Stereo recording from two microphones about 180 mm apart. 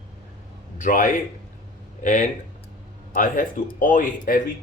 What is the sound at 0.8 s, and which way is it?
Speech, 45° left (ahead or behind).